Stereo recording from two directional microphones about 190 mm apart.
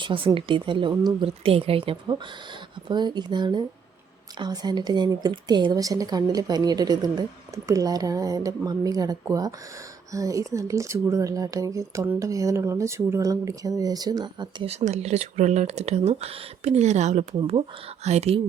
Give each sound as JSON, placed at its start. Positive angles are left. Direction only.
{"t": 0.0, "sound": "a woman's voice", "side_deg": -25}